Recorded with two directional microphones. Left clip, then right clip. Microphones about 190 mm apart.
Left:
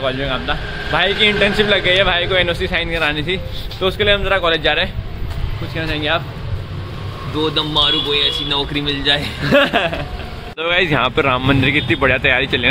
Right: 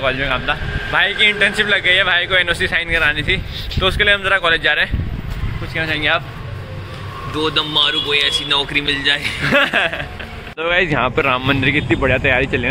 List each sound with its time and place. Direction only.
0.0 s speech: 15° right (ahead or behind)
0.9 s speech: 5° left (ahead or behind)
5.8 s speech: 5° right (ahead or behind)
7.3 s a man's voice: 20° left (ahead or behind)
9.4 s a man's voice: 5° right (ahead or behind); by 12.6 s 10° left (ahead or behind)